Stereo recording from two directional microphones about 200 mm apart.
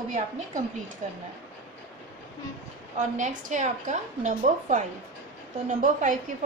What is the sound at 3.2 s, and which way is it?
A woman's voice, 40° right (ahead or behind).